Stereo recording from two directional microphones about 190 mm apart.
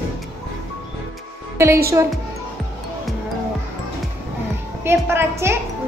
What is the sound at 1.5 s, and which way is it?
Speech, 15° right (ahead or behind).